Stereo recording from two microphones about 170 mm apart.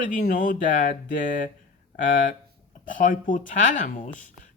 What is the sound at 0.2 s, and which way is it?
Speech, 50° left (ahead or behind).